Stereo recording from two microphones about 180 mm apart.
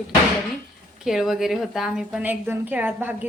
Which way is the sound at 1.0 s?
Centre (ahead or behind).